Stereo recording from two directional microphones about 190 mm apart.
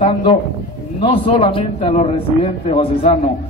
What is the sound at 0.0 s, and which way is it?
A man's voice, 30° left (ahead or behind).